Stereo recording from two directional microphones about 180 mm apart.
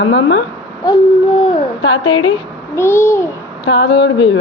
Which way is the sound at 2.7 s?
15° left (ahead or behind).